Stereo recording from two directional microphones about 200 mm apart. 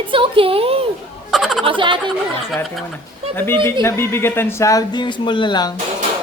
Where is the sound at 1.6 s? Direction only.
25° right (ahead or behind).